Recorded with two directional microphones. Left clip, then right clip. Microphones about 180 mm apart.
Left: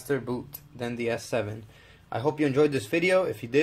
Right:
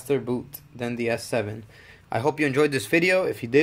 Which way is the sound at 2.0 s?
40° right (ahead or behind).